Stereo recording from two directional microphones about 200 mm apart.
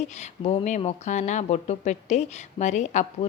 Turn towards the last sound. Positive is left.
turn(degrees=35)  # may be behind; listen again after turning